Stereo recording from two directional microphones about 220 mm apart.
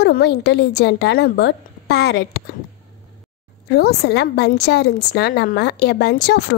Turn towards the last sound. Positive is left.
turn(degrees=50)  # may be behind; listen again after turning